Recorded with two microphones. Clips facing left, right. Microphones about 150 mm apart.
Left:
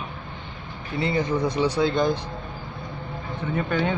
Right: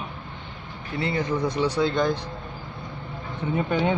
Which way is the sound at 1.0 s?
20° left (ahead or behind).